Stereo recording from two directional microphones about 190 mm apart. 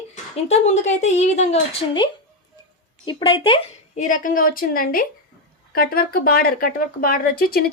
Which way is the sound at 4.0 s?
45° left (ahead or behind).